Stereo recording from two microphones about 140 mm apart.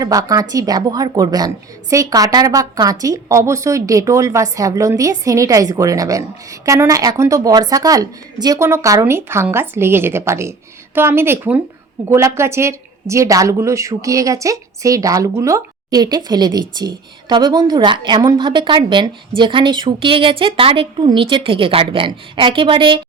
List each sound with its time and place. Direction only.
0.0 s a woman's voice: 25° right (ahead or behind)